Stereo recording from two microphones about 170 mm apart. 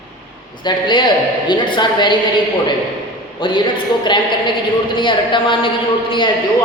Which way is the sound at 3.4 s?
30° left (ahead or behind).